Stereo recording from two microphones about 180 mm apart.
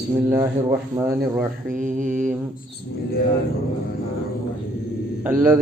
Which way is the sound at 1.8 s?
45° right (ahead or behind).